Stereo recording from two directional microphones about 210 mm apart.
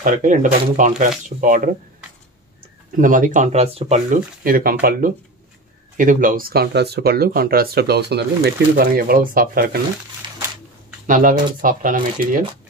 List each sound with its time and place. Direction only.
0.0 s speech: 40° right (ahead or behind)
3.0 s speech: 40° right (ahead or behind)
5.9 s speech: 40° right (ahead or behind)
11.1 s speech: 40° right (ahead or behind)